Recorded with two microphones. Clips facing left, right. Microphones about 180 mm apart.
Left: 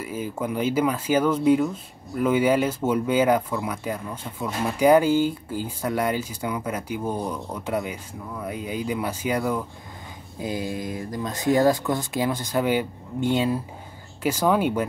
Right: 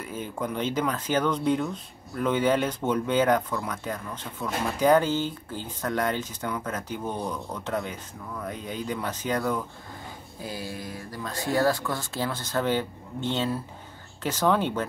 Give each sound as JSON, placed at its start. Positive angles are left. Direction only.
{"t": 0.0, "sound": "speech", "side_deg": 5}